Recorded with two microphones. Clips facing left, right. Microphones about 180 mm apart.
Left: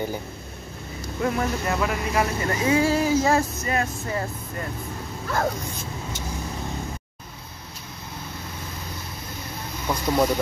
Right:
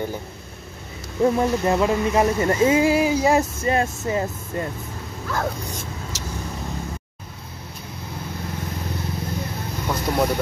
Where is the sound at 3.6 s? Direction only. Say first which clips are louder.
Right 4 dB; 30° right (ahead or behind).